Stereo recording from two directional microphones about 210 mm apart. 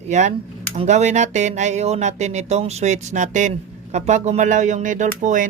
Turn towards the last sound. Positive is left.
turn(degrees=-35)  # may be behind; listen again after turning